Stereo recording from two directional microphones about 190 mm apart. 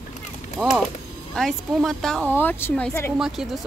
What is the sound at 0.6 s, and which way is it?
Speech, 10° right (ahead or behind).